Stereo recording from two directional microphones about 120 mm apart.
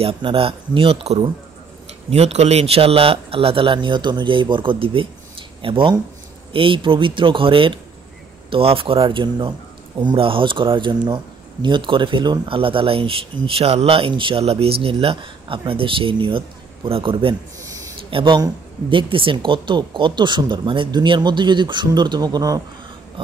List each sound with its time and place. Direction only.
0.0 s speech: 50° right (ahead or behind)
17.6 s a sound: 30° right (ahead or behind)
18.1 s speech: 40° right (ahead or behind)
23.2 s speech: 45° right (ahead or behind)